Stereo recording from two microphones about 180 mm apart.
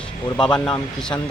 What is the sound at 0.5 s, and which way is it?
Speech, 5° left (ahead or behind).